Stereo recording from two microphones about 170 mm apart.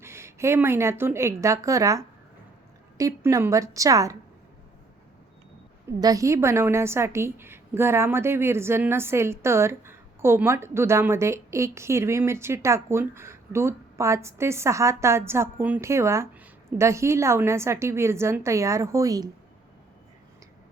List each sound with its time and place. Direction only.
0.0 s a woman's voice: 15° right (ahead or behind)
6.0 s a woman's voice: 20° right (ahead or behind)